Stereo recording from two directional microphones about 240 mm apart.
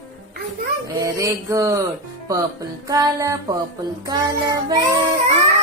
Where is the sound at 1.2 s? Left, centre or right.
Centre.